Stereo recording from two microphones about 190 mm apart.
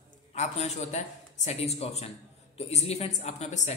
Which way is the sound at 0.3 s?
35° left (ahead or behind).